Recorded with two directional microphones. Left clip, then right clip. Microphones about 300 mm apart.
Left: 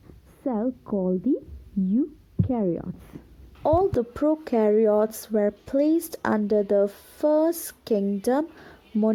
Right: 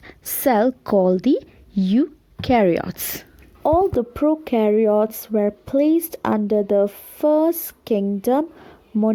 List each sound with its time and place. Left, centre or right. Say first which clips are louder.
0.4 s a woman's voice: right 11 dB; right
1.9 s speech: right 6 dB; right
3.6 s speech: right 4 dB; centre